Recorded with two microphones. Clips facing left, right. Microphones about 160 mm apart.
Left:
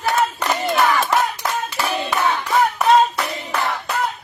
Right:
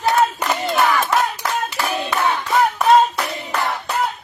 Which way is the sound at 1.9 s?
5° right (ahead or behind).